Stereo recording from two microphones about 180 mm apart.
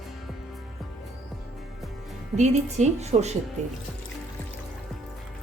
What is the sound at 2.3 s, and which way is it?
Speech, 40° right (ahead or behind).